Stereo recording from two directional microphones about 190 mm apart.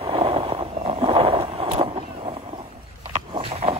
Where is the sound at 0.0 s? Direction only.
25° right (ahead or behind).